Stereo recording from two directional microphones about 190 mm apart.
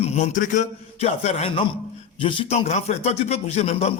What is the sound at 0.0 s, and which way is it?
A man's voice, 35° left (ahead or behind).